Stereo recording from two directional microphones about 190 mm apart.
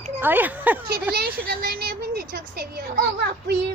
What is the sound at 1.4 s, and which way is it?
Speech, 55° right (ahead or behind).